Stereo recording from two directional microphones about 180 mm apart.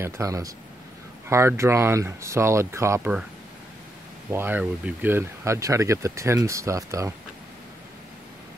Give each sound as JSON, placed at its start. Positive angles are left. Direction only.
{"t": 0.0, "sound": "speech", "side_deg": -15}
{"t": 4.3, "sound": "speech", "side_deg": -10}